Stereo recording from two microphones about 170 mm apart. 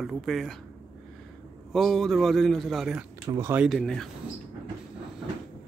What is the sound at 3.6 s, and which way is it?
Speech, centre (ahead or behind).